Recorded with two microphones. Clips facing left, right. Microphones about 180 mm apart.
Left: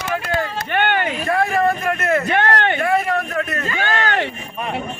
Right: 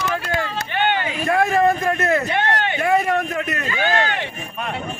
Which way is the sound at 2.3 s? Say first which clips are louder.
Left 3 dB; 55° left (ahead or behind).